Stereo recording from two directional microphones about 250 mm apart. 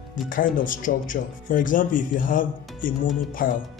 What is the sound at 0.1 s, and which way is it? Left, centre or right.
Speech, left.